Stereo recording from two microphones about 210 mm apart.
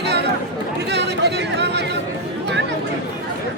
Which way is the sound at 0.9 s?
55° right (ahead or behind).